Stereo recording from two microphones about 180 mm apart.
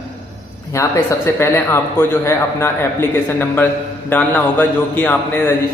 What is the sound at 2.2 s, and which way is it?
A man's voice, 15° left (ahead or behind).